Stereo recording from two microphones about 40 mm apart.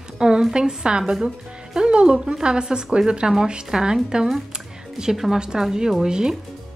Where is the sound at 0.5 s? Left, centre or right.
Right.